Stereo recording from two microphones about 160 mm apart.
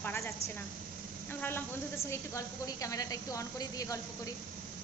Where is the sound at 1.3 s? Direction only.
15° left (ahead or behind).